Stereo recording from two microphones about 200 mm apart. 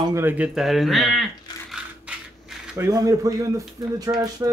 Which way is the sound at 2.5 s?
Centre (ahead or behind).